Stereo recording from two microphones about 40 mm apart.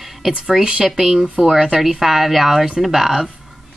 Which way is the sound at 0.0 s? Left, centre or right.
Centre.